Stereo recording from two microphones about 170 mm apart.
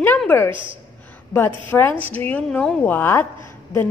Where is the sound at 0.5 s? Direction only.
30° right (ahead or behind).